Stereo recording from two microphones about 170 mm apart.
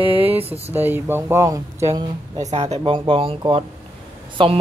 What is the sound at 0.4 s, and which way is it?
Speech, 35° right (ahead or behind).